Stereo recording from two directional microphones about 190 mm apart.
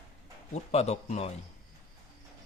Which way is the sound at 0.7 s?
35° left (ahead or behind).